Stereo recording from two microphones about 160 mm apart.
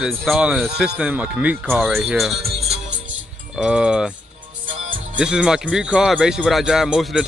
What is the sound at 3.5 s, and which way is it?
Speech, 5° right (ahead or behind).